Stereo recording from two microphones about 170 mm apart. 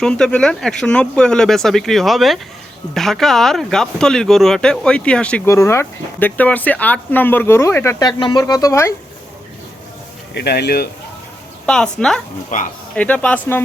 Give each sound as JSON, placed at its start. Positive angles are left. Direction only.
{"t": 0.0, "sound": "speech", "side_deg": 5}
{"t": 10.3, "sound": "speech", "side_deg": 75}
{"t": 11.6, "sound": "speech", "side_deg": 5}
{"t": 12.5, "sound": "speech", "side_deg": 50}
{"t": 13.0, "sound": "speech", "side_deg": 10}